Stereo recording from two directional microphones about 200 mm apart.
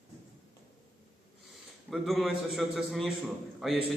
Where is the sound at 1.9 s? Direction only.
Centre (ahead or behind).